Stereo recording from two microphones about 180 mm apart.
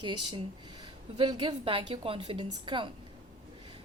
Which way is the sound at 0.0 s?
25° right (ahead or behind).